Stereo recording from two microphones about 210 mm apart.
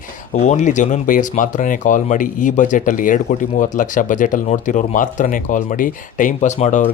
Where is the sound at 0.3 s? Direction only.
35° left (ahead or behind).